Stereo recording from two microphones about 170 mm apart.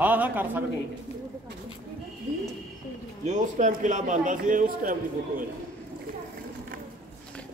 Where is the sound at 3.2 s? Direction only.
45° right (ahead or behind).